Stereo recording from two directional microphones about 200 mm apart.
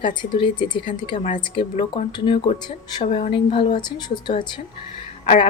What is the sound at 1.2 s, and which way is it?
Speech, 40° left (ahead or behind).